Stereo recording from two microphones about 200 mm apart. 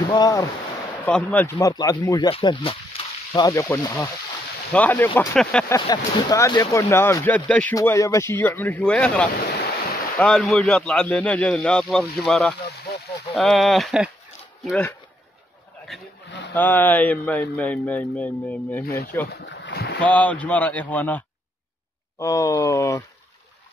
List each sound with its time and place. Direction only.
0.1 s speech: 20° left (ahead or behind)
1.0 s a man's voice: 10° left (ahead or behind)
5.8 s a man's voice: 15° left (ahead or behind)
16.5 s a man's voice: 10° left (ahead or behind)
19.3 s boat: 60° left (ahead or behind)
20.0 s a man's voice: 5° left (ahead or behind)
22.2 s a man's voice: 15° left (ahead or behind)